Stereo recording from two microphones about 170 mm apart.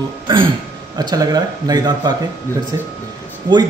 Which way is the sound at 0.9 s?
25° right (ahead or behind).